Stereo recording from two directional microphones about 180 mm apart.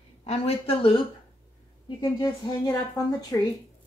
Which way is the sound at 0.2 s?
35° left (ahead or behind).